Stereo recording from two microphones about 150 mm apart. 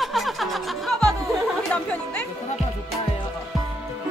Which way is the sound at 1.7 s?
10° left (ahead or behind).